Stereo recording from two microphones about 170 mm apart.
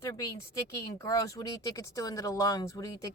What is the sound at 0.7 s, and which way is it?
A woman's voice, 20° left (ahead or behind).